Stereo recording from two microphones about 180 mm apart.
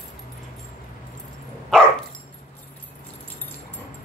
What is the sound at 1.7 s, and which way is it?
Dog, 5° left (ahead or behind).